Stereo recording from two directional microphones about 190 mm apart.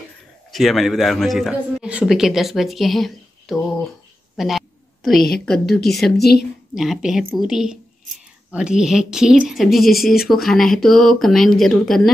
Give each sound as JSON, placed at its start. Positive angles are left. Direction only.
{"t": 0.5, "sound": "speech", "side_deg": 0}
{"t": 4.4, "sound": "a sound", "side_deg": 0}
{"t": 5.4, "sound": "speech", "side_deg": 0}
{"t": 6.1, "sound": "a woman's voice", "side_deg": 55}
{"t": 6.7, "sound": "speech", "side_deg": 0}